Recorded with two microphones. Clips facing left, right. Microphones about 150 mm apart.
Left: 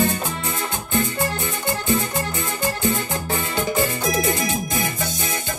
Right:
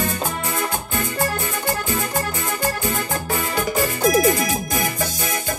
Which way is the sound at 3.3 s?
25° left (ahead or behind).